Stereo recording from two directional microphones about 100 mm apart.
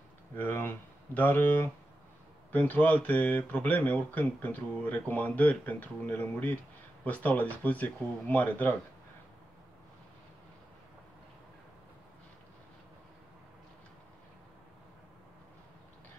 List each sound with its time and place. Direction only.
0.3 s speech: 20° left (ahead or behind)